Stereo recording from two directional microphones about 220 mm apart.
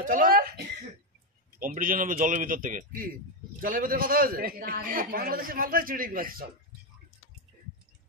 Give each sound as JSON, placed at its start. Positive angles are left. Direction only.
{"t": 0.0, "sound": "throat clearing", "side_deg": -40}
{"t": 1.6, "sound": "a man's voice", "side_deg": -40}